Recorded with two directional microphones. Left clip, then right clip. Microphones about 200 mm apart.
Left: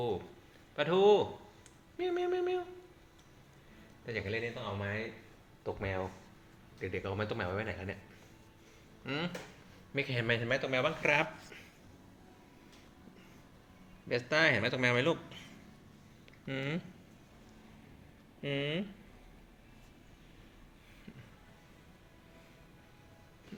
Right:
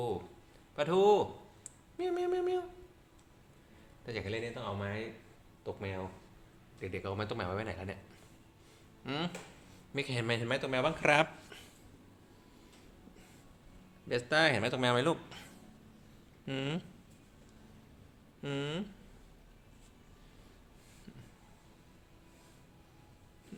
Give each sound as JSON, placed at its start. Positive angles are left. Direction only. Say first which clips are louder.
{"t": 0.8, "sound": "a sound", "louder": "left 1 dB", "side_deg": -5}
{"t": 4.0, "sound": "speech", "louder": "left 2 dB", "side_deg": -10}
{"t": 5.6, "sound": "speech", "louder": "left 3 dB", "side_deg": 15}
{"t": 6.7, "sound": "speech", "louder": "left 1 dB", "side_deg": 0}
{"t": 9.0, "sound": "speech", "louder": "even", "side_deg": -15}
{"t": 10.6, "sound": "speech", "louder": "even", "side_deg": -30}
{"t": 14.3, "sound": "speech", "louder": "even", "side_deg": -20}
{"t": 16.5, "sound": "speech", "louder": "even", "side_deg": -15}
{"t": 18.4, "sound": "speech", "louder": "left 3 dB", "side_deg": -10}